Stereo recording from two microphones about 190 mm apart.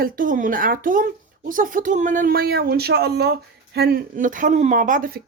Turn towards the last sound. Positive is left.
turn(degrees=-45)  # may be behind; listen again after turning